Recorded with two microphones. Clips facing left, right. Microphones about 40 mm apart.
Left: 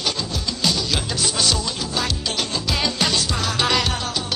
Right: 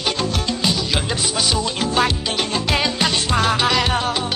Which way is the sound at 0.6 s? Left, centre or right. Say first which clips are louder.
Left 1 dB; centre.